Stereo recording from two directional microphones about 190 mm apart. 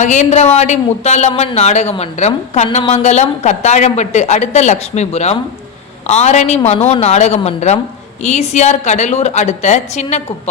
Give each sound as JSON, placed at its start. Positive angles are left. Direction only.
{"t": 0.0, "sound": "speech", "side_deg": 40}